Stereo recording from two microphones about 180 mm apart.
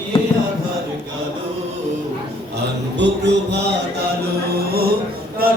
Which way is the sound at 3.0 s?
75° right (ahead or behind).